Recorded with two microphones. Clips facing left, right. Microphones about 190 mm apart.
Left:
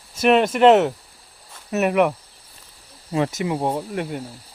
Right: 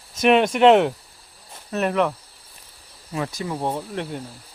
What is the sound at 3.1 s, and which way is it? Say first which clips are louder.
Speech: left 6 dB; 25° left (ahead or behind).